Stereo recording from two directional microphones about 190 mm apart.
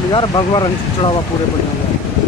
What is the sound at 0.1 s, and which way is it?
Speech, 25° left (ahead or behind).